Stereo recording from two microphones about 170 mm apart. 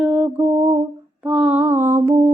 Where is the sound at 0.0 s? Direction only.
10° right (ahead or behind).